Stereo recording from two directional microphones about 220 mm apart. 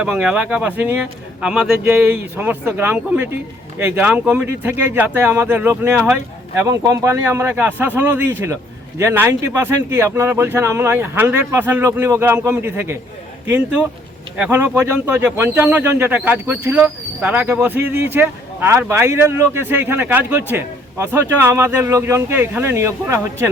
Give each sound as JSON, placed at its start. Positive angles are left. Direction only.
{"t": 0.0, "sound": "speech", "side_deg": -5}
{"t": 14.3, "sound": "speech", "side_deg": -5}